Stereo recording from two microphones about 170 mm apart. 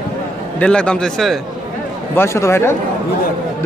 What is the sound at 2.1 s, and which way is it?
Speech, 15° left (ahead or behind).